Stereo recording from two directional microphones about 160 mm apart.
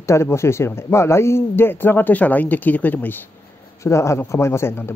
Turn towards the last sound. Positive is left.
turn(degrees=15)  # may be behind; listen again after turning